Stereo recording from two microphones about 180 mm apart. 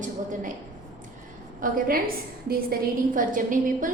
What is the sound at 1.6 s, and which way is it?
A woman's voice, 55° right (ahead or behind).